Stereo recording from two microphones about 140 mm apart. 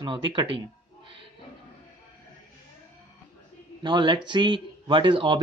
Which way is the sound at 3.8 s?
35° right (ahead or behind).